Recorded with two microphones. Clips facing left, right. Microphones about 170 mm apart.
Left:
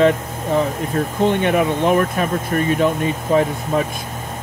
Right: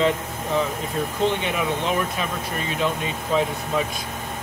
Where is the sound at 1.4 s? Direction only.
50° left (ahead or behind).